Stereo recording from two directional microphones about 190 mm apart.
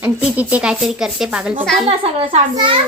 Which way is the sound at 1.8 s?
30° right (ahead or behind).